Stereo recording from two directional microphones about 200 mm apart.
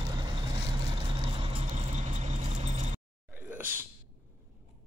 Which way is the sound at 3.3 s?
10° right (ahead or behind).